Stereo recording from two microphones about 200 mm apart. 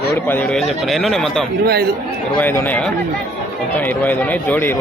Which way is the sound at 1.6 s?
50° right (ahead or behind).